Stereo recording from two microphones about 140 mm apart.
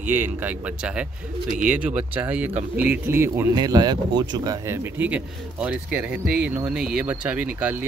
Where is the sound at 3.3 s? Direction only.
30° right (ahead or behind); by 7.8 s 10° right (ahead or behind).